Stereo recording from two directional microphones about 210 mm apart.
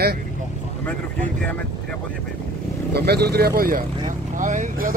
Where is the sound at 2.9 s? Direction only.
50° right (ahead or behind).